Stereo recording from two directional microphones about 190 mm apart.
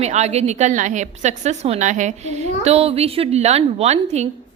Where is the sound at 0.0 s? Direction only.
35° right (ahead or behind).